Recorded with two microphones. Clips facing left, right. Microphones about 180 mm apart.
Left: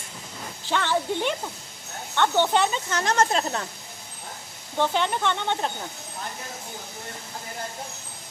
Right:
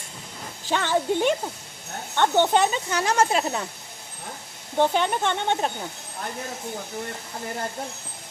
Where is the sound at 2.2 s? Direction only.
15° right (ahead or behind).